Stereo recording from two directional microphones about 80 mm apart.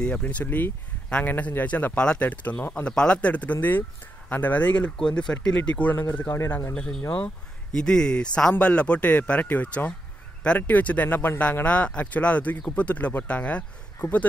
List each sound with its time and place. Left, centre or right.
0.0 s speech: centre
6.1 s speech: left
6.7 s speech: centre
7.7 s speech: centre